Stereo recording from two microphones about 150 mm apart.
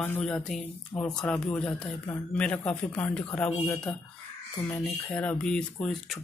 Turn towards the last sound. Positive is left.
turn(degrees=5)  # may be behind; listen again after turning